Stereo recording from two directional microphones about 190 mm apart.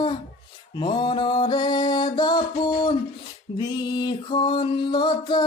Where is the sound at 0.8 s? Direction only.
25° left (ahead or behind).